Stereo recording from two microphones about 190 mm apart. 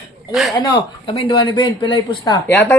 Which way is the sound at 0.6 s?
30° left (ahead or behind).